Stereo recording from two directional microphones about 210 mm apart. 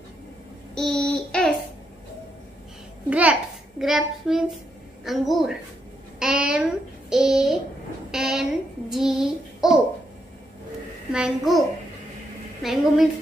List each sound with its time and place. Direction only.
0.7 s a sound: 5° left (ahead or behind)
3.1 s a child's voice: 5° right (ahead or behind)
8.9 s child singing: centre (ahead or behind)
11.1 s a child's voice: 5° right (ahead or behind)
12.6 s a child's voice: centre (ahead or behind)